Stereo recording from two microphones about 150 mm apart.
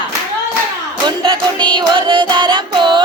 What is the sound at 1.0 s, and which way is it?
Music, 30° right (ahead or behind).